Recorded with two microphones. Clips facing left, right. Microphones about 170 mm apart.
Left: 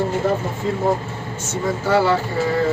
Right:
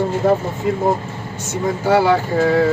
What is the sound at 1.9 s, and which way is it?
Speech, 10° right (ahead or behind).